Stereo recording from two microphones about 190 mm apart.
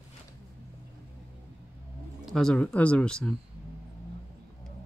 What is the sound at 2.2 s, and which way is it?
Speech, centre (ahead or behind).